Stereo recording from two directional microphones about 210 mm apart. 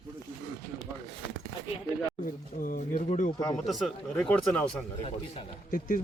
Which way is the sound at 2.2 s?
40° left (ahead or behind).